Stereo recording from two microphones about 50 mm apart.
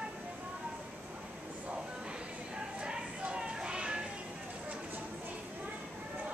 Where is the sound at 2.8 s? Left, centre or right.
Centre.